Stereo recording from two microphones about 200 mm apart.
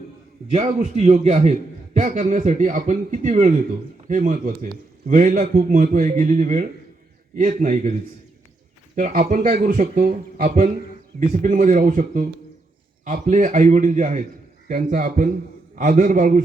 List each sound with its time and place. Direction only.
0.5 s a man's voice: 35° right (ahead or behind)
9.0 s a man's voice: 40° right (ahead or behind)